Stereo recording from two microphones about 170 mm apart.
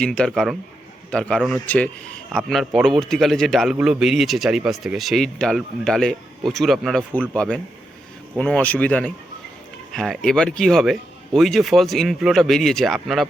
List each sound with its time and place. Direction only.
0.0 s a man's voice: 5° left (ahead or behind)